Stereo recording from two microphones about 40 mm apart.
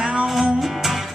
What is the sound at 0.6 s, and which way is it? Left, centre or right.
Music, centre.